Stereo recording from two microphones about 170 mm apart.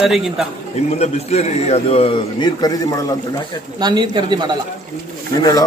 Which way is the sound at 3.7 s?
25° right (ahead or behind).